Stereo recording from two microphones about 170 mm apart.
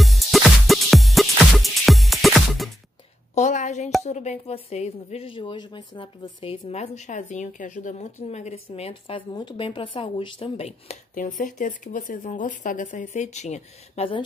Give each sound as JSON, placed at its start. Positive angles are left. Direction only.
{"t": 0.0, "sound": "music", "side_deg": 0}
{"t": 3.3, "sound": "a sound", "side_deg": 45}
{"t": 4.0, "sound": "speech", "side_deg": 40}
{"t": 11.1, "sound": "speech", "side_deg": 50}